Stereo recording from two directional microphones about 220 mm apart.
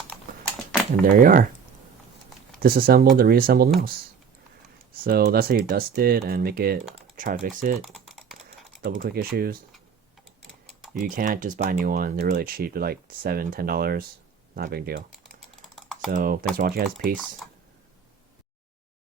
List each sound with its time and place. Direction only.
1.0 s speech: 40° right (ahead or behind)
2.6 s speech: 40° right (ahead or behind)
5.0 s speech: 45° right (ahead or behind)
7.9 s typing: centre (ahead or behind)
8.4 s speech: 40° right (ahead or behind)
10.4 s typing: centre (ahead or behind)
11.0 s speech: 35° right (ahead or behind)
15.7 s typing: centre (ahead or behind)
16.0 s speech: 40° right (ahead or behind)
17.4 s a sound: centre (ahead or behind)